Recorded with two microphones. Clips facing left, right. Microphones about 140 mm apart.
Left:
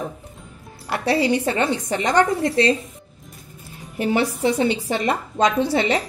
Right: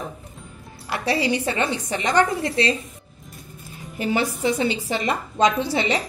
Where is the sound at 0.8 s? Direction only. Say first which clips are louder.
Left 3 dB; 55° left (ahead or behind).